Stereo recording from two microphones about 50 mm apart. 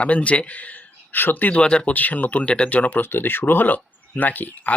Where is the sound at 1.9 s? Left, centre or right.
Left.